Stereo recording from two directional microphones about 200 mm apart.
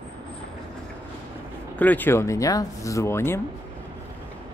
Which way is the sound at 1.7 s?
10° left (ahead or behind).